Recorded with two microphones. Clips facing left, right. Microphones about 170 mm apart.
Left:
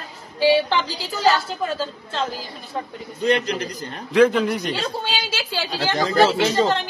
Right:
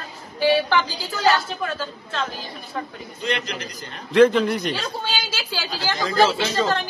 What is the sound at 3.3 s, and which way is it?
Speech, 35° left (ahead or behind).